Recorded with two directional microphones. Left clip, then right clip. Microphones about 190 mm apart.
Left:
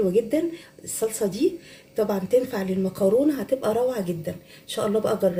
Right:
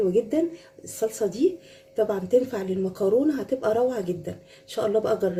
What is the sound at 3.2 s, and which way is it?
Speech, 45° right (ahead or behind).